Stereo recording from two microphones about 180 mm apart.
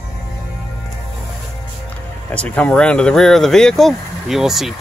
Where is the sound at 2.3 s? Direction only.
5° left (ahead or behind).